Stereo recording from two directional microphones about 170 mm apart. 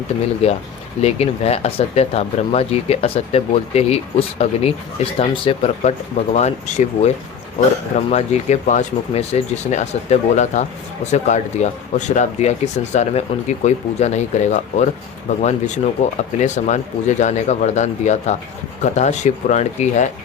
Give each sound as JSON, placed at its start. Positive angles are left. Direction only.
{"t": 0.4, "sound": "speech", "side_deg": 35}
{"t": 8.1, "sound": "speech", "side_deg": 40}